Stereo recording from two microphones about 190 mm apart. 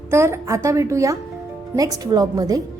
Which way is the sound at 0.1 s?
15° right (ahead or behind).